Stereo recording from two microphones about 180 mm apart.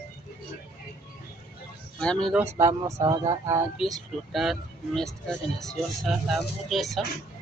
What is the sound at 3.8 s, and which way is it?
Speech, centre (ahead or behind).